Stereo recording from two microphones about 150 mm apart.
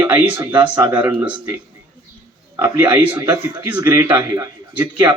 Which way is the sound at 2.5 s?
15° right (ahead or behind).